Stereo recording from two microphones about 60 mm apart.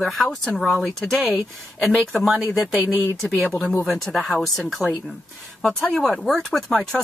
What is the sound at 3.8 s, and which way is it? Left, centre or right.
Speech, centre.